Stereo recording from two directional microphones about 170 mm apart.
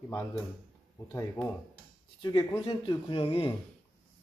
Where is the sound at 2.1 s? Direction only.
25° left (ahead or behind).